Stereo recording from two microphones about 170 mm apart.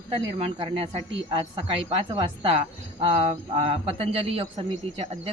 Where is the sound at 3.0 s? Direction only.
35° right (ahead or behind).